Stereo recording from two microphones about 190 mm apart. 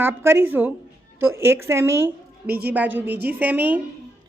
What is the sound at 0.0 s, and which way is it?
A woman's voice, 10° right (ahead or behind).